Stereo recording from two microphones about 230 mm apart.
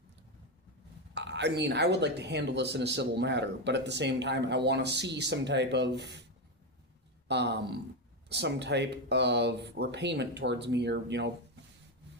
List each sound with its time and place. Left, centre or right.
1.1 s speech: right
7.3 s speech: right